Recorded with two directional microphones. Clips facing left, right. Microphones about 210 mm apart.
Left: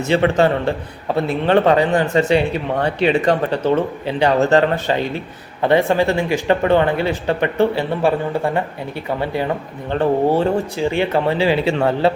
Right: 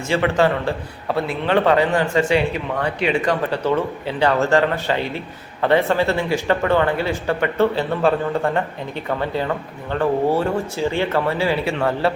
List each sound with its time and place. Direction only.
0.1 s speech: 25° left (ahead or behind)
3.5 s speech: 20° left (ahead or behind)